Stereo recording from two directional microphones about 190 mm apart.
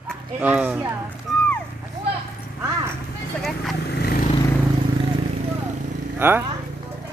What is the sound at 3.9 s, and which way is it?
Vehicle, 55° left (ahead or behind).